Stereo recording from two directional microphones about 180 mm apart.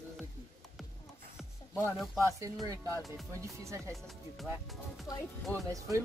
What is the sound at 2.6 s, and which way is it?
Speech, 20° right (ahead or behind).